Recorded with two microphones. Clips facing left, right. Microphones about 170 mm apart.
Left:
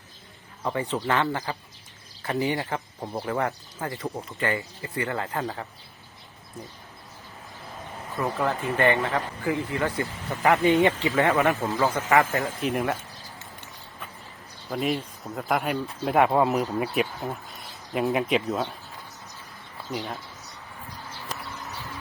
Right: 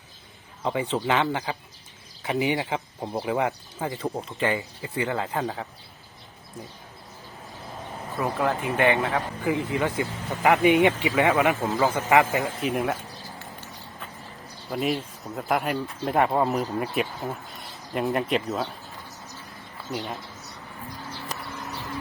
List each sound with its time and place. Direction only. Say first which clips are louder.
0.6 s speech: right 2 dB; 15° right (ahead or behind)
8.2 s speech: right 1 dB; centre (ahead or behind)
8.6 s speech: even; 15° right (ahead or behind)
12.6 s speech: left 1 dB; centre (ahead or behind)
14.7 s speech: even; centre (ahead or behind)
19.9 s speech: even; centre (ahead or behind)